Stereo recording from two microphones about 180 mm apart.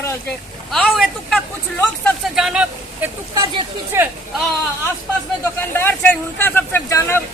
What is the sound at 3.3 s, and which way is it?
Speech, 25° right (ahead or behind).